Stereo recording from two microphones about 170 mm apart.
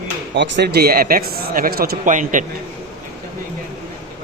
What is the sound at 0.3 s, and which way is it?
Speech, 80° right.